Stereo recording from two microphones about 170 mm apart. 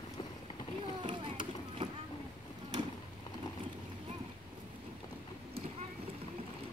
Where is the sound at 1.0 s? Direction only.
30° right (ahead or behind).